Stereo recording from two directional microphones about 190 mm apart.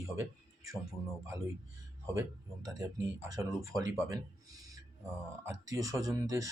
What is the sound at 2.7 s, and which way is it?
Speech, 20° right (ahead or behind).